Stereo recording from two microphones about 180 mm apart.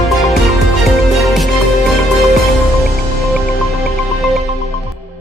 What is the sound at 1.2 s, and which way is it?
Music, centre (ahead or behind).